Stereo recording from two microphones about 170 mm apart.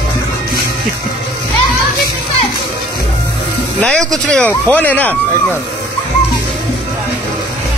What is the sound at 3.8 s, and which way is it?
Speech, 5° left (ahead or behind).